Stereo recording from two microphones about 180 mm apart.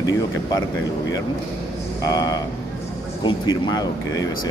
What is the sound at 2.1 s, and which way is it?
Speech, 20° left (ahead or behind).